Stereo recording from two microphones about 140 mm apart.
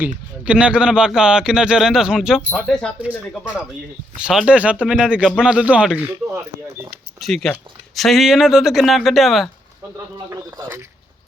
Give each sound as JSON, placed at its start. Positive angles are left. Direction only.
{"t": 0.4, "sound": "speech", "side_deg": -5}
{"t": 4.2, "sound": "speech", "side_deg": -5}
{"t": 7.2, "sound": "speech", "side_deg": 5}
{"t": 10.2, "sound": "speech", "side_deg": -20}